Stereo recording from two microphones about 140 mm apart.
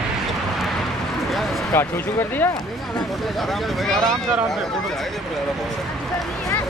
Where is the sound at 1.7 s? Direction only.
15° left (ahead or behind).